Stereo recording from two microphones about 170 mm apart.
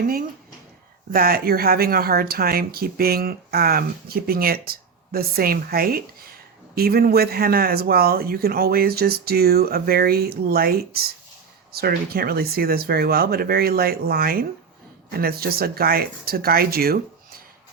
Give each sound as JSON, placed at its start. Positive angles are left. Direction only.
{"t": 1.1, "sound": "speech", "side_deg": -60}